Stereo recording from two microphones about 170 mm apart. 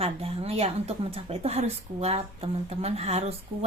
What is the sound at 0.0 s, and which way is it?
Speech, 35° right (ahead or behind).